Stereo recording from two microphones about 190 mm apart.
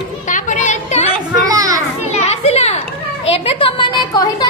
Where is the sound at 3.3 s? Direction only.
30° left (ahead or behind).